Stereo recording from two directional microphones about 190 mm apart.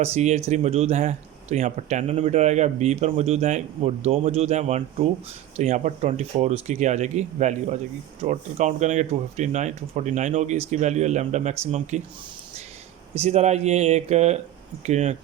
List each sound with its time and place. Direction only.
0.0 s speech: 35° right (ahead or behind)
13.1 s speech: 35° right (ahead or behind)